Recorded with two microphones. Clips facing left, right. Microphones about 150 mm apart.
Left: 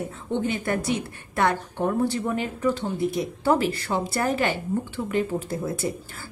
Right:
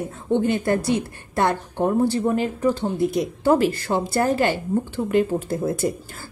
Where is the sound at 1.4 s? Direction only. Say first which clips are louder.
Right 2 dB; 30° right (ahead or behind).